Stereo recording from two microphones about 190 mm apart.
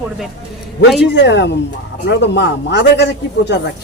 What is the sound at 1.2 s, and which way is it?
Speech, 65° left (ahead or behind).